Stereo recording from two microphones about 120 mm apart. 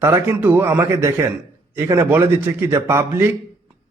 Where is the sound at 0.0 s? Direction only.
25° right (ahead or behind).